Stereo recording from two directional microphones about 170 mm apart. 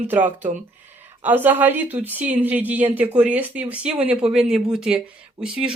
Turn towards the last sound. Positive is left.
turn(degrees=-5)  # may be behind; listen again after turning